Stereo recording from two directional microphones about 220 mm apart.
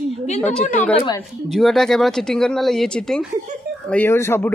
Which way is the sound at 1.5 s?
Centre (ahead or behind).